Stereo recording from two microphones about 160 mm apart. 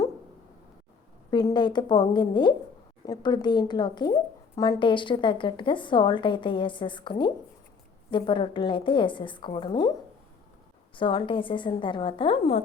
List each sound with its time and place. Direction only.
1.3 s a woman's voice: 25° left (ahead or behind)
10.9 s a woman's voice: 30° left (ahead or behind)